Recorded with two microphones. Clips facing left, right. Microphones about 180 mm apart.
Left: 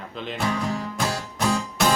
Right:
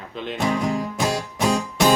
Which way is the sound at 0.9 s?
20° right (ahead or behind).